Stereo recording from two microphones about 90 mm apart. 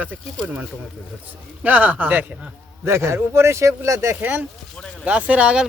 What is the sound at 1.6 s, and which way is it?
Speech, 15° right (ahead or behind).